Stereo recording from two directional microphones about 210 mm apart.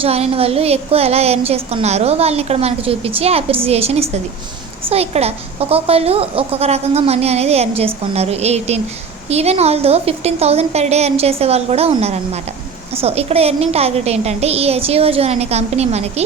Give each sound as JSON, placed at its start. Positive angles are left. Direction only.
{"t": 0.0, "sound": "a woman's voice", "side_deg": -30}